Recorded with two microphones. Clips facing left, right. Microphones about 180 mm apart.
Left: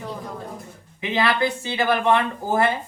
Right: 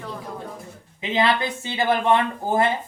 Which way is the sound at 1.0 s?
20° right (ahead or behind).